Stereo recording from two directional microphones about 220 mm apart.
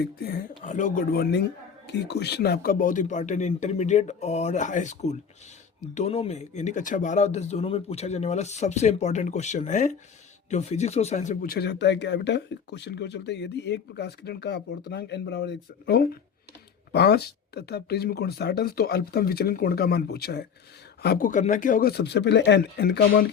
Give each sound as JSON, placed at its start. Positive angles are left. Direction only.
{"t": 0.0, "sound": "speech", "side_deg": 45}